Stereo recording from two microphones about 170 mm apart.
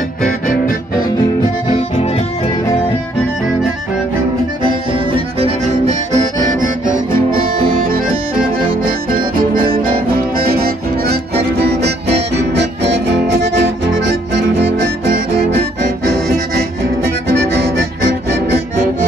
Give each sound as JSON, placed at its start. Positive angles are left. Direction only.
{"t": 4.6, "sound": "accordion", "side_deg": -30}
{"t": 8.8, "sound": "music", "side_deg": -55}
{"t": 12.4, "sound": "music", "side_deg": -90}
{"t": 17.3, "sound": "harmonica", "side_deg": -80}